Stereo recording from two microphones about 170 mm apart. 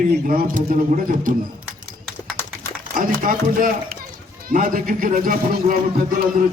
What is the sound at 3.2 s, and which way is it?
A man's voice, 55° right (ahead or behind).